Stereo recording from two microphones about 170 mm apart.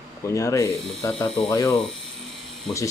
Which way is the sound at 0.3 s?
15° left (ahead or behind).